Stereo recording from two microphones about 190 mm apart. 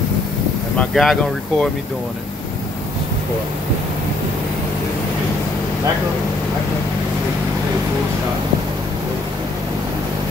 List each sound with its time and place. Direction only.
0.7 s speech: 5° left (ahead or behind)